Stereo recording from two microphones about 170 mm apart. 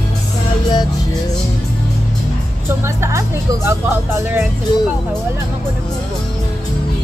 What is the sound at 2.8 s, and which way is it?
Music, 15° right (ahead or behind).